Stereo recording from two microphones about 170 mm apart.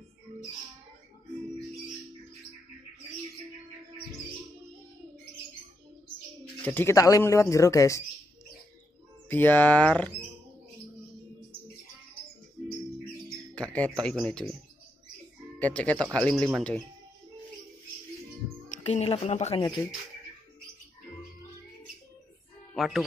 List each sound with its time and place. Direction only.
6.6 s speech: 10° left (ahead or behind)
9.3 s speech: 10° left (ahead or behind)
13.6 s speech: 5° left (ahead or behind)
15.6 s speech: 10° left (ahead or behind)
18.9 s a woman's voice: 40° left (ahead or behind)
22.8 s speech: centre (ahead or behind)